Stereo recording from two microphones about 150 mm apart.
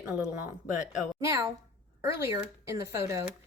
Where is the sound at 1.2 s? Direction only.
20° right (ahead or behind).